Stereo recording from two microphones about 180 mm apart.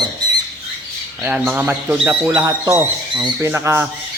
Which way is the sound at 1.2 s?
10° right (ahead or behind).